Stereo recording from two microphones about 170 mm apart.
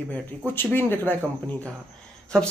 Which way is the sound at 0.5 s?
10° left (ahead or behind).